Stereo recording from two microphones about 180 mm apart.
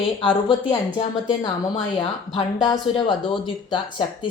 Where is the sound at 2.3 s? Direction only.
25° left (ahead or behind).